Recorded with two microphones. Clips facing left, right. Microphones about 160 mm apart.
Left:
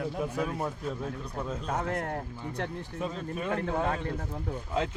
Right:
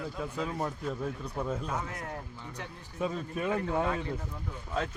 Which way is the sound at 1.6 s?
55° left (ahead or behind).